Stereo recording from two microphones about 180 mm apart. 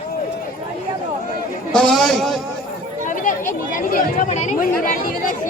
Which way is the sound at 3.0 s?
50° left (ahead or behind).